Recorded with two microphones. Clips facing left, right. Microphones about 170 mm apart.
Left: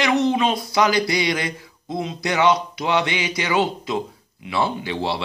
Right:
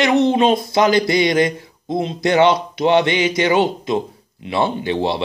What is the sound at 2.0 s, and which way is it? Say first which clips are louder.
Speech: right 5 dB; 30° right (ahead or behind).